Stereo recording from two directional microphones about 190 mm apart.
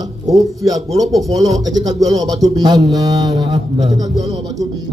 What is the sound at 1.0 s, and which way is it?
Speech, centre (ahead or behind).